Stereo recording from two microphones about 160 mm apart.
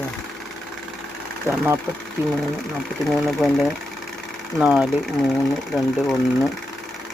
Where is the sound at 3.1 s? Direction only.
Centre (ahead or behind).